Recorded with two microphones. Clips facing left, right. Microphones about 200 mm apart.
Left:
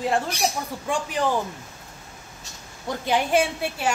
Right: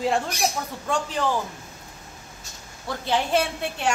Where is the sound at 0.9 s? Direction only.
10° left (ahead or behind).